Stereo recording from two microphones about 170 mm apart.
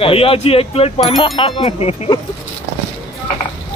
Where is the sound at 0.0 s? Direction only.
35° left (ahead or behind).